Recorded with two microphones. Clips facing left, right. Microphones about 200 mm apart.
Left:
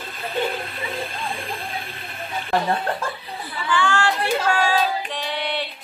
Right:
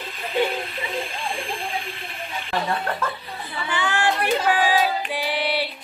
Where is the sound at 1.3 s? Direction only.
40° left (ahead or behind).